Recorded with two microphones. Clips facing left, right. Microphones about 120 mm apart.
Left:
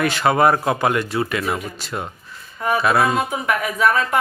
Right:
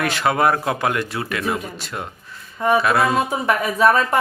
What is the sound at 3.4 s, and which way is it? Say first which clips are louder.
Speech: right 3 dB; 35° right (ahead or behind).